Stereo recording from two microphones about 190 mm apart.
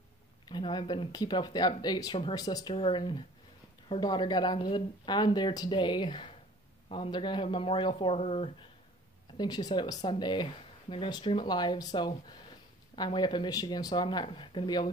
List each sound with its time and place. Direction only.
0.5 s speech: 25° left (ahead or behind)
9.4 s speech: 20° left (ahead or behind)